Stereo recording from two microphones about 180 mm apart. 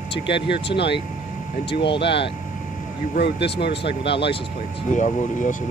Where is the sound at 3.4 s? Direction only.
70° left (ahead or behind).